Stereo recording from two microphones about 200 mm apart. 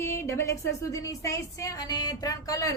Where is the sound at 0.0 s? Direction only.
15° left (ahead or behind).